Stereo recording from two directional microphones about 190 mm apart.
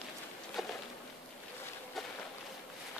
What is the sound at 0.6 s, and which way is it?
Insect, centre (ahead or behind).